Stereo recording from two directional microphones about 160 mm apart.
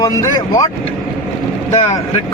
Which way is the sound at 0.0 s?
20° left (ahead or behind).